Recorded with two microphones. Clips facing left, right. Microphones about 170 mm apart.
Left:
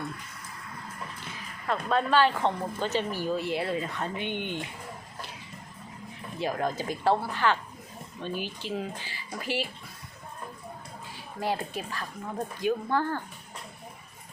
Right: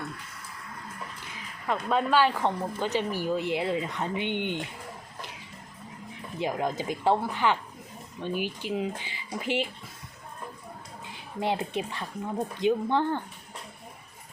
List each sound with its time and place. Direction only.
1.6 s speech: 15° right (ahead or behind)
6.4 s speech: 15° right (ahead or behind)
11.3 s speech: 20° right (ahead or behind)